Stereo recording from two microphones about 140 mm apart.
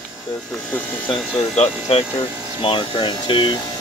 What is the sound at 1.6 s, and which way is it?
Speech, 45° left (ahead or behind).